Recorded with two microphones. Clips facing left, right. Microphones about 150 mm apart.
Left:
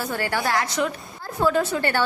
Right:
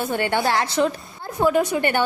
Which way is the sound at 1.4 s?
15° right (ahead or behind).